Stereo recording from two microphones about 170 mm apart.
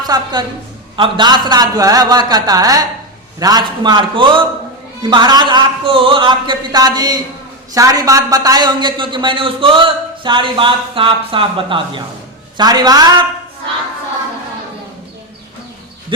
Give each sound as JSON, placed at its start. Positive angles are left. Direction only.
{"t": 0.0, "sound": "a woman's voice", "side_deg": -25}